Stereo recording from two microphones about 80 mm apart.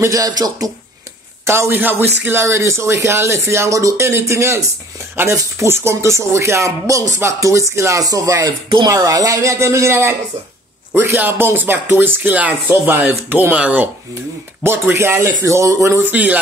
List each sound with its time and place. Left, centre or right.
0.0 s speech: right
1.4 s speech: right
11.1 s speech: right
13.6 s speech: centre
14.6 s speech: right
16.0 s speech: right